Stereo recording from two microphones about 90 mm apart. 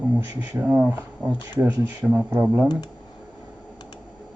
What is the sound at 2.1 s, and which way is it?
Speech, 20° right (ahead or behind).